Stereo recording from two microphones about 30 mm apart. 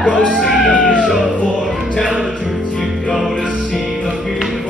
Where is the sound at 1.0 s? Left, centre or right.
Centre.